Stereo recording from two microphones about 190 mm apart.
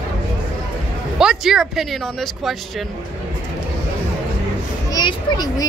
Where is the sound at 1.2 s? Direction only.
5° right (ahead or behind).